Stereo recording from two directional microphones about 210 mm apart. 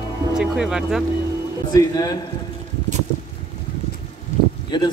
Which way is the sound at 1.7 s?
20° left (ahead or behind).